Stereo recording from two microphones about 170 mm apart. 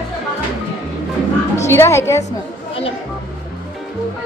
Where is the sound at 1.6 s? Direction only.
15° left (ahead or behind).